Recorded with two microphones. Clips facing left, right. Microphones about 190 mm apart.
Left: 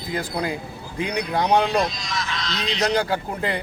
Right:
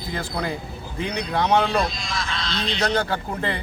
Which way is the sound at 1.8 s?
30° right (ahead or behind).